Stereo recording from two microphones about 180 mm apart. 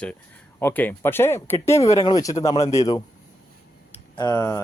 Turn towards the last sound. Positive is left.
turn(degrees=20)  # may be behind; listen again after turning